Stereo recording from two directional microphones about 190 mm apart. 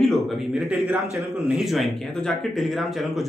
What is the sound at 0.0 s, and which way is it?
A man's voice, centre (ahead or behind).